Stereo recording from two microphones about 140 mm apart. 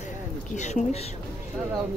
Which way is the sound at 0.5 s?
55° left (ahead or behind).